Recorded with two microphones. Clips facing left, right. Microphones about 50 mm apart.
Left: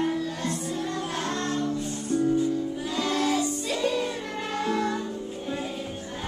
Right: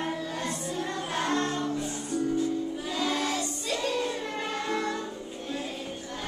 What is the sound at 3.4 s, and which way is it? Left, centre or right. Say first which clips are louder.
Music: left 4 dB; centre.